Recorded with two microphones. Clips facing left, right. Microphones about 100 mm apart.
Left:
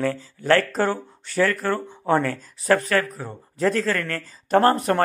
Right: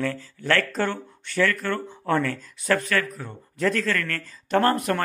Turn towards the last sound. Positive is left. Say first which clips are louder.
# left 3 dB
turn(degrees=30)  # may be behind; listen again after turning